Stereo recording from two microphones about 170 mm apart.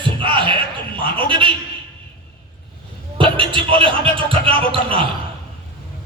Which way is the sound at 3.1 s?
30° right (ahead or behind).